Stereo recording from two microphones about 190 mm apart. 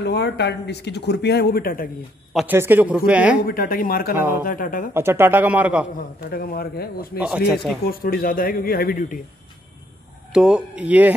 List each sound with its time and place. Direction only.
0.0 s speech: 60° left (ahead or behind)
2.3 s speech: 10° right (ahead or behind)
3.4 s speech: 50° left (ahead or behind)
4.9 s speech: 10° right (ahead or behind)
5.9 s speech: 50° left (ahead or behind)
7.2 s speech: 5° right (ahead or behind)
7.8 s speech: 50° left (ahead or behind)
10.3 s speech: 5° right (ahead or behind)